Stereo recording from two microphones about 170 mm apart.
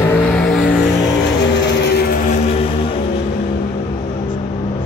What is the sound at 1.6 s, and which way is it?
Vehicle, 90° left.